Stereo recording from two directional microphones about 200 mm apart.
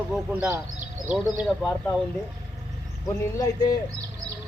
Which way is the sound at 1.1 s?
Centre (ahead or behind).